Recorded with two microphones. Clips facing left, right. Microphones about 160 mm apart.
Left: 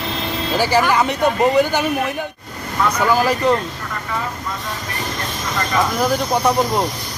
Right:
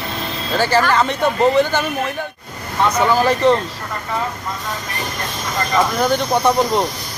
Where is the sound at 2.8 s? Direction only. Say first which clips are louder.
Right 2 dB; 25° right (ahead or behind).